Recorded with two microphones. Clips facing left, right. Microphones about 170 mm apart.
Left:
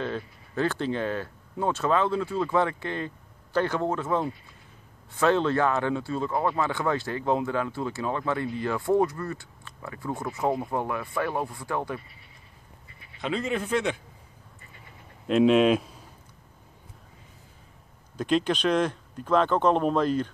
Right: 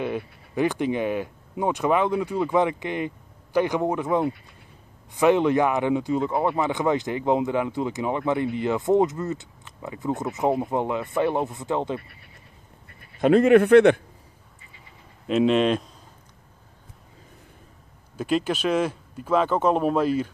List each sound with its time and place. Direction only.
0.0 s speech: 15° right (ahead or behind)
12.8 s speech: 55° right (ahead or behind)
15.2 s speech: centre (ahead or behind)
18.1 s speech: 5° right (ahead or behind)